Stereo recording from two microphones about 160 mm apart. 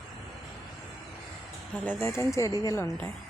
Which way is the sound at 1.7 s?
10° left (ahead or behind).